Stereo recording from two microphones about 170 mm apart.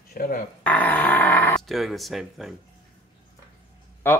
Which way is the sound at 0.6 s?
10° left (ahead or behind).